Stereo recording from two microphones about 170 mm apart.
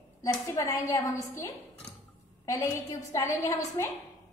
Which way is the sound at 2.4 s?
15° left (ahead or behind).